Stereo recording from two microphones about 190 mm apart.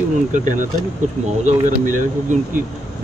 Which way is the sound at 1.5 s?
40° right (ahead or behind).